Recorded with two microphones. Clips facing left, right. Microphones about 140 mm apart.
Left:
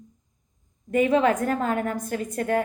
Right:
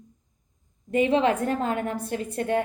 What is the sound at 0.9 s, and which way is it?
A woman's voice, 30° right (ahead or behind).